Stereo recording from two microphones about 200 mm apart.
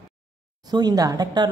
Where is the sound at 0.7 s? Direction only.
20° right (ahead or behind).